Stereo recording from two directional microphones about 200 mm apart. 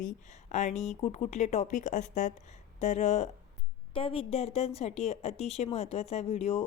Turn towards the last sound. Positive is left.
turn(degrees=35)  # may be behind; listen again after turning